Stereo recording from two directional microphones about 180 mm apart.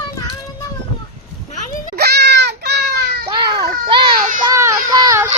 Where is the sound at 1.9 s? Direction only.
65° right (ahead or behind).